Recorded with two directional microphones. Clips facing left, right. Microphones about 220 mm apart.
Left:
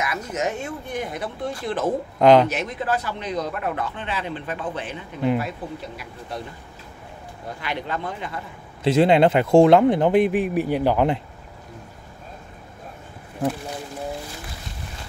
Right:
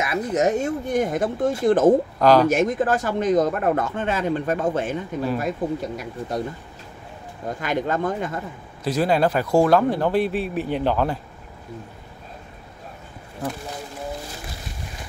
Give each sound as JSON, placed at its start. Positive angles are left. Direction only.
{"t": 0.0, "sound": "speech", "side_deg": -35}
{"t": 2.1, "sound": "speech", "side_deg": 20}
{"t": 2.4, "sound": "speech", "side_deg": -45}
{"t": 7.4, "sound": "speech", "side_deg": -45}
{"t": 8.8, "sound": "speech", "side_deg": 25}